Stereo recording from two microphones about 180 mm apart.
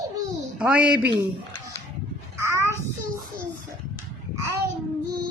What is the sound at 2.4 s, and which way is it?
Child singing, 15° right (ahead or behind).